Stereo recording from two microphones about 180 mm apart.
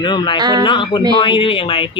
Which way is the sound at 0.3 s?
20° right (ahead or behind).